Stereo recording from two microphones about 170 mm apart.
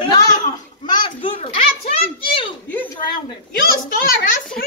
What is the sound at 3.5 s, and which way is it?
Speech, 60° left (ahead or behind).